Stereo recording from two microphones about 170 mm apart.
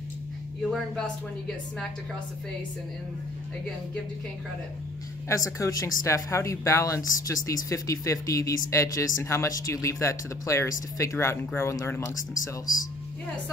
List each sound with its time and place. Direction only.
0.7 s speech: 5° left (ahead or behind)
5.3 s speech: 20° left (ahead or behind)